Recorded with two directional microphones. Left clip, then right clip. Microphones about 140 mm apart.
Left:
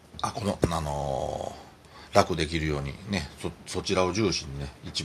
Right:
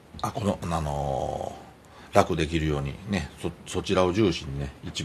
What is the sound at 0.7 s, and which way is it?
A man's voice, 5° right (ahead or behind).